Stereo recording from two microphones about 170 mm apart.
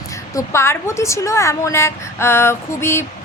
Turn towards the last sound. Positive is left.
turn(degrees=15)  # may be behind; listen again after turning